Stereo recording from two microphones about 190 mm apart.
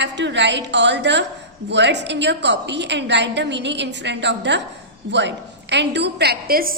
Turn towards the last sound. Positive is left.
turn(degrees=-50)  # may be behind; listen again after turning